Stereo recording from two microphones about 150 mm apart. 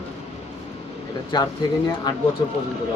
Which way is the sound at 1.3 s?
30° left (ahead or behind).